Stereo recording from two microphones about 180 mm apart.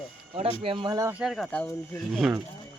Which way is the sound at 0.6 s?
30° right (ahead or behind).